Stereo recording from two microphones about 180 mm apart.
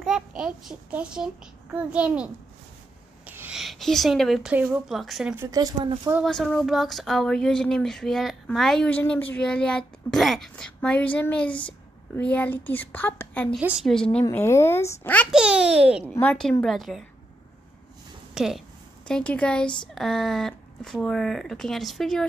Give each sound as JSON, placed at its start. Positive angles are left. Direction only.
{"t": 0.0, "sound": "a child's voice", "side_deg": -5}
{"t": 5.5, "sound": "speech", "side_deg": -20}
{"t": 6.1, "sound": "a woman's voice", "side_deg": 0}
{"t": 13.6, "sound": "speech", "side_deg": -5}
{"t": 14.2, "sound": "a woman's voice", "side_deg": 15}
{"t": 15.3, "sound": "speech", "side_deg": -5}
{"t": 16.2, "sound": "speech", "side_deg": 5}
{"t": 18.3, "sound": "a sound", "side_deg": 0}
{"t": 19.0, "sound": "speech", "side_deg": 5}